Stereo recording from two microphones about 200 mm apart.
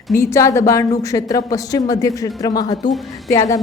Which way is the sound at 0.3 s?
15° left (ahead or behind).